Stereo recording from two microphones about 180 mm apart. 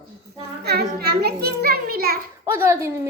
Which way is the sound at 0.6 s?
65° right (ahead or behind).